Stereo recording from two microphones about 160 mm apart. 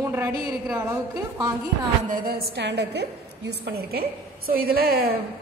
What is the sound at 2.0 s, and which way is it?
A woman's voice, 65° right (ahead or behind).